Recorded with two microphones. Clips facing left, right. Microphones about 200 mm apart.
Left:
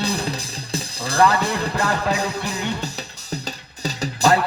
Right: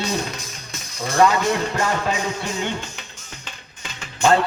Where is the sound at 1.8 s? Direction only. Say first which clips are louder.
Left 1 dB; 35° left (ahead or behind).